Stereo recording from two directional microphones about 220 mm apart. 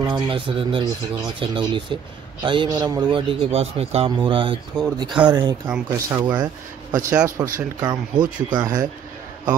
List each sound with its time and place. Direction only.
0.0 s a man's voice: 20° right (ahead or behind)